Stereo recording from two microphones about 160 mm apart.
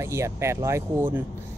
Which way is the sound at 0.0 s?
15° right (ahead or behind).